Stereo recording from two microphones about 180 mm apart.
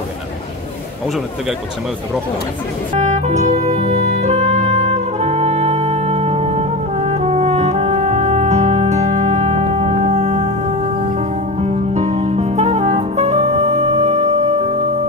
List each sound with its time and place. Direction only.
2.9 s music: 40° right (ahead or behind)